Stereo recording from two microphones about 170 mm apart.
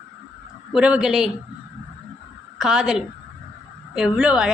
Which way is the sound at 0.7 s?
5° right (ahead or behind).